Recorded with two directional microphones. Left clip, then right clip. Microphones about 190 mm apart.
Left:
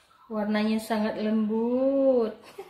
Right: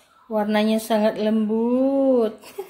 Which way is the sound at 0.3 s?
45° right (ahead or behind).